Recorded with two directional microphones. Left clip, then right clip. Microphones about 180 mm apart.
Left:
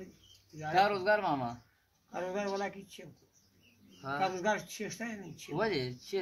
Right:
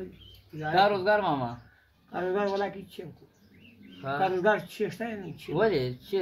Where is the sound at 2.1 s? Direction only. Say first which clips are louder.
Right 7 dB; 25° left (ahead or behind).